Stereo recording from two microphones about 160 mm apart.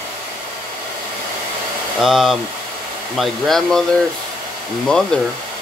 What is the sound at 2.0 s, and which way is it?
Speech, centre (ahead or behind).